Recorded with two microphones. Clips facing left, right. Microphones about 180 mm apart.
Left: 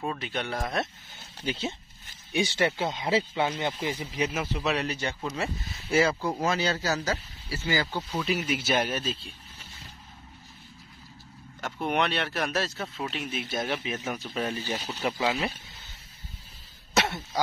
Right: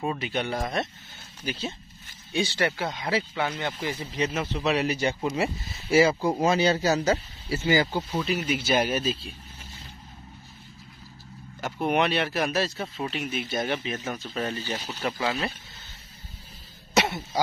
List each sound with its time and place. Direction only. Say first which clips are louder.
0.0 s speech: right 3 dB; 5° right (ahead or behind)
1.4 s speech: left 1 dB; 25° left (ahead or behind); by 8.0 s 20° right (ahead or behind)
8.1 s speech: right 2 dB; 5° right (ahead or behind)
11.6 s speech: right 3 dB; 5° right (ahead or behind); by 15.4 s 15° left (ahead or behind)
16.9 s speech: right 3 dB; 5° right (ahead or behind)